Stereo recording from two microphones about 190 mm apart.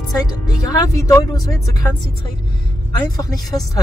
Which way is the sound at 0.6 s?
20° left (ahead or behind).